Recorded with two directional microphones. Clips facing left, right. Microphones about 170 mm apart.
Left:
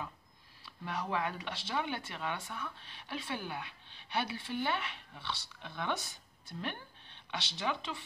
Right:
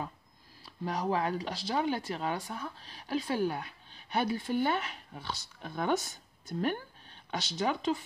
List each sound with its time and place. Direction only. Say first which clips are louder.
0.7 s speech: right 6 dB; 35° right (ahead or behind)